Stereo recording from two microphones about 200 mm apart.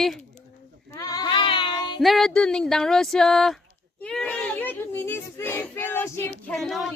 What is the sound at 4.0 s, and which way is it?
Child singing, 5° left (ahead or behind).